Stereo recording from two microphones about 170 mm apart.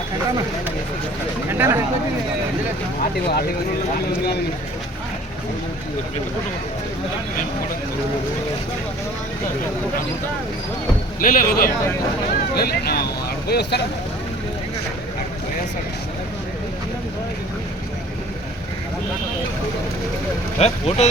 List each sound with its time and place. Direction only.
1.5 s speech: 15° right (ahead or behind)
3.0 s speech: 65° left (ahead or behind)
11.2 s speech: 55° left (ahead or behind); by 13.8 s 75° left (ahead or behind)
20.6 s speech: 40° left (ahead or behind)